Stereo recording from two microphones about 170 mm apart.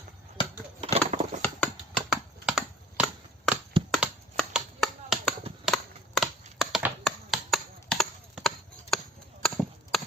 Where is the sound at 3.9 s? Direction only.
Centre (ahead or behind).